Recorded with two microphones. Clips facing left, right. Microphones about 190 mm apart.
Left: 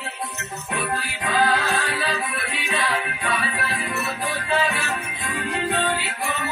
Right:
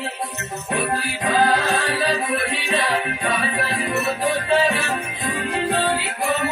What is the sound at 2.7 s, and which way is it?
Music, 35° right (ahead or behind).